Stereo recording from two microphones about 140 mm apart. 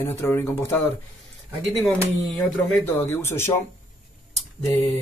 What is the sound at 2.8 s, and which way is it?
Speech, 15° left (ahead or behind).